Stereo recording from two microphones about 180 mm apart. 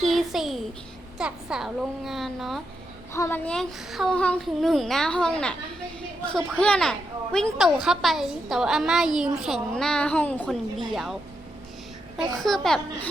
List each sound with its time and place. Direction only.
0.0 s a child's voice: centre (ahead or behind)
3.1 s a woman's voice: 15° left (ahead or behind)